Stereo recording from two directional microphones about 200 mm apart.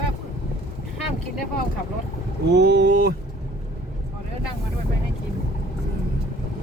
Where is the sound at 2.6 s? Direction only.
55° right (ahead or behind).